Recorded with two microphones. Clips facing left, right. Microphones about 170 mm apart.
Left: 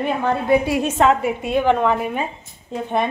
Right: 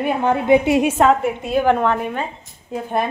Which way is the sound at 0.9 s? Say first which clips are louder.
Right 1 dB; centre (ahead or behind).